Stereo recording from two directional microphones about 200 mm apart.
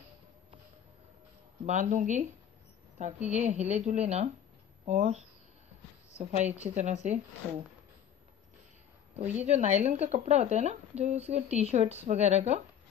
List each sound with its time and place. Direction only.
1.7 s a woman's voice: 35° right (ahead or behind)
3.3 s a woman's voice: 35° right (ahead or behind)
9.2 s speech: 10° right (ahead or behind)
9.5 s a woman's voice: 35° right (ahead or behind)